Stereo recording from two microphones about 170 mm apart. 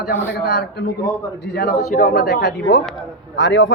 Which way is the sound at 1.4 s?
75° left (ahead or behind).